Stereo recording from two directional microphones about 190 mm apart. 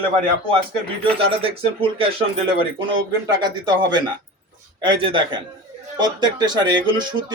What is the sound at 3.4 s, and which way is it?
Speech, 20° right (ahead or behind).